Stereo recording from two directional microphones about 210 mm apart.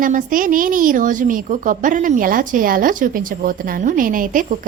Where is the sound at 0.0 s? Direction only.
40° right (ahead or behind).